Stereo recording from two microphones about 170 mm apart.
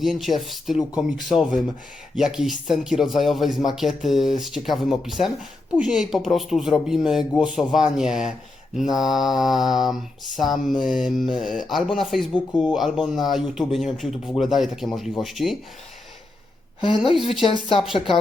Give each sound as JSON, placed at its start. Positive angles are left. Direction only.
{"t": 0.0, "sound": "speech", "side_deg": 0}
{"t": 17.2, "sound": "speech", "side_deg": 0}
{"t": 17.4, "sound": "speech", "side_deg": 30}